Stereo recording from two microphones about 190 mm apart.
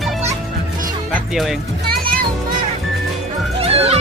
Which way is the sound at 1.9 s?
50° right (ahead or behind).